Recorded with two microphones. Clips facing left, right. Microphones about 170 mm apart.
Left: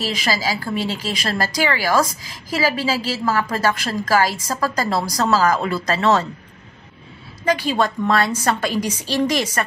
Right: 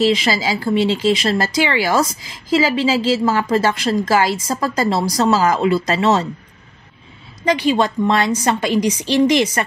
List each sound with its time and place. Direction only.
0.0 s a woman's voice: 25° right (ahead or behind)
7.7 s a woman's voice: 20° right (ahead or behind)